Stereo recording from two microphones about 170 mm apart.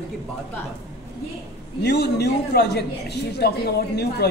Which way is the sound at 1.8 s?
75° left (ahead or behind).